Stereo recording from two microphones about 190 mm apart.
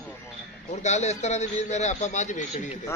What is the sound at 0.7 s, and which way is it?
A man's voice, 35° left (ahead or behind).